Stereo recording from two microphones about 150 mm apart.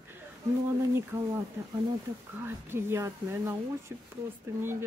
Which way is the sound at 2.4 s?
15° right (ahead or behind).